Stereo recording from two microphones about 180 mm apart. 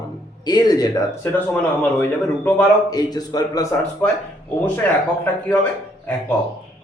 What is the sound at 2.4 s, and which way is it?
A man's voice, 20° left (ahead or behind).